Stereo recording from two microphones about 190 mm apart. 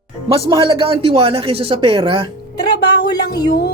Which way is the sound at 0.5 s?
25° right (ahead or behind).